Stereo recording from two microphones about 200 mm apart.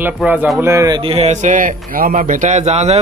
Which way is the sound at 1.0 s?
30° right (ahead or behind).